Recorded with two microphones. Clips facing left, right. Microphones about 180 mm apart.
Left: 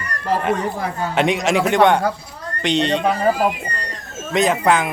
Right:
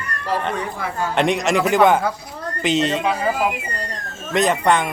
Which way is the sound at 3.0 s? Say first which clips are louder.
Left 3 dB; 45° left (ahead or behind).